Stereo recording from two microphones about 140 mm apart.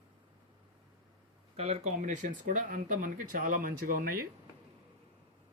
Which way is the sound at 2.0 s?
65° right (ahead or behind).